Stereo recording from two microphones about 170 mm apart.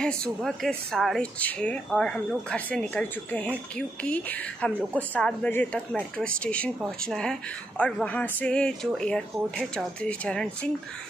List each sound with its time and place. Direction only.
0.0 s speech: 5° left (ahead or behind)